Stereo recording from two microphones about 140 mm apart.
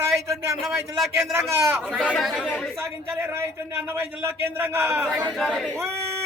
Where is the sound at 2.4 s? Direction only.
5° left (ahead or behind).